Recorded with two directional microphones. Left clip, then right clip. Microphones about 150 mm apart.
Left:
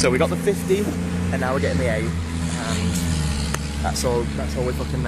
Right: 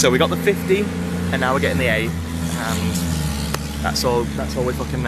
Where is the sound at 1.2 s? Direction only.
20° right (ahead or behind).